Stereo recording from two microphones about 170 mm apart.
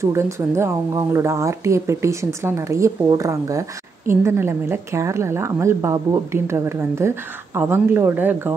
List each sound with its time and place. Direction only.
0.0 s a woman's voice: 15° right (ahead or behind)